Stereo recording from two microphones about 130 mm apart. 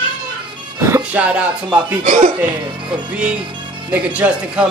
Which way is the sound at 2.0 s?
65° right (ahead or behind).